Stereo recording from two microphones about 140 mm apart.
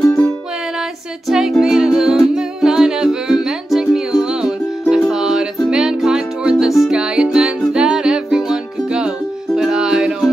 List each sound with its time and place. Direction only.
0.0 s music: 20° left (ahead or behind)
1.6 s humming: 5° right (ahead or behind)
5.7 s music: 5° right (ahead or behind)